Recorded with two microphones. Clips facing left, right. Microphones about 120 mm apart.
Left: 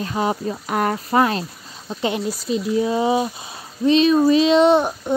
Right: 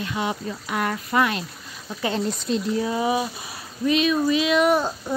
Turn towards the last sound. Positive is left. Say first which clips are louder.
# left 5 dB
turn(degrees=20)  # may be behind; listen again after turning